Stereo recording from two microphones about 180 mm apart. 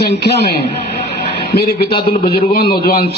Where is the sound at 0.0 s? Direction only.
65° left (ahead or behind).